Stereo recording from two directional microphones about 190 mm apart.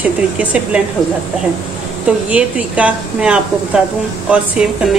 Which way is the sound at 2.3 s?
5° right (ahead or behind).